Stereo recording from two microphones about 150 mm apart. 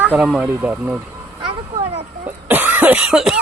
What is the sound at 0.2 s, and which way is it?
Speech, 5° right (ahead or behind).